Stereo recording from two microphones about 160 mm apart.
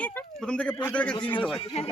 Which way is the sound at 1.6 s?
35° left (ahead or behind).